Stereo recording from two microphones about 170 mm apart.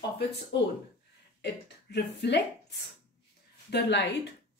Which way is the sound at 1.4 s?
85° left.